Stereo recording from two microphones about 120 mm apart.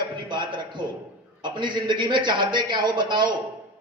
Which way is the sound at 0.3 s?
40° right (ahead or behind).